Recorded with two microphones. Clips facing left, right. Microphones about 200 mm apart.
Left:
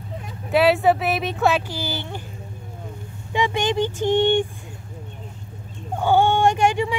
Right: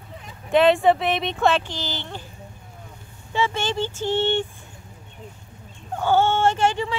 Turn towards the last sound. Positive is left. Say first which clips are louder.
# left 2 dB
turn(degrees=15)  # may be behind; listen again after turning